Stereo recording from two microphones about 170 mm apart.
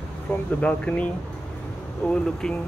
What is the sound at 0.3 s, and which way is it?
Speech, 10° left (ahead or behind).